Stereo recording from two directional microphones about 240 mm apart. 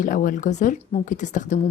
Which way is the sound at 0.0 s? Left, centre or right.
Left.